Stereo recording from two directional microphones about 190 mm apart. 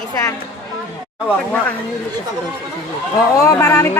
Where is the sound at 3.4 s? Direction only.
15° left (ahead or behind).